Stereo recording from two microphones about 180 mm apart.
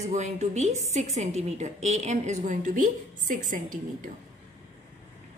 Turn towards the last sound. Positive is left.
turn(degrees=-45)  # may be behind; listen again after turning